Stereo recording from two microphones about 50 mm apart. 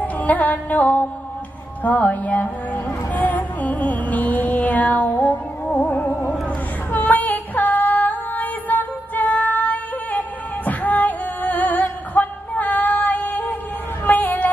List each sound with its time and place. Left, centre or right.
0.0 s music: left
6.9 s female singing: left
14.0 s a sound: left